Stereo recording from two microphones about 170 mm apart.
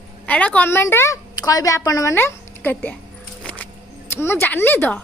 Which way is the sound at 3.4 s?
10° left (ahead or behind).